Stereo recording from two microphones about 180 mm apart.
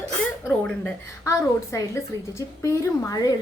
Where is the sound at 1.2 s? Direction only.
15° left (ahead or behind).